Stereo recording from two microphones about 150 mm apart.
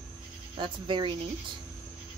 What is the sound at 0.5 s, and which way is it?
Speech, 35° right (ahead or behind).